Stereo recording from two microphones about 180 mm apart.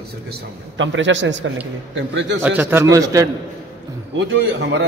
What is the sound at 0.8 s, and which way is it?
A man's voice, 90° right.